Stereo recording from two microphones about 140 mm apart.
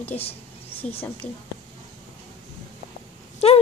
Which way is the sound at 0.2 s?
45° left (ahead or behind).